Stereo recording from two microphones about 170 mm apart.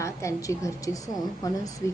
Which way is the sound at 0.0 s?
15° left (ahead or behind).